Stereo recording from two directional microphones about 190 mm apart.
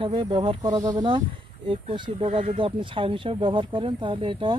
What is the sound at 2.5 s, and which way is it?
Speech, 30° right (ahead or behind).